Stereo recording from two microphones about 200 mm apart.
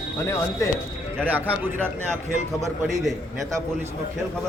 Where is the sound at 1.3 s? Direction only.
10° right (ahead or behind).